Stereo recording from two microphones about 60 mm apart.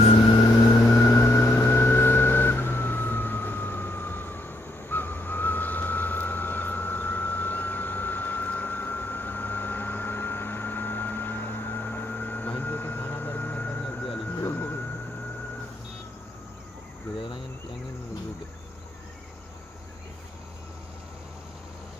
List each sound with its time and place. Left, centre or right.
0.7 s vehicle: left
0.9 s vehicle: left
14.3 s a sound: left